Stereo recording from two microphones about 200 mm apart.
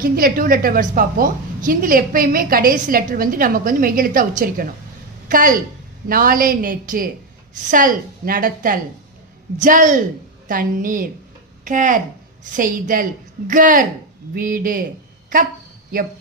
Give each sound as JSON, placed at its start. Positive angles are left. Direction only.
{"t": 0.0, "sound": "a woman's voice", "side_deg": -45}